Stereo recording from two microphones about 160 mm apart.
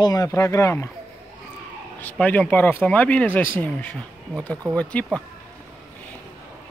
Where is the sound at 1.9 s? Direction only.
10° left (ahead or behind).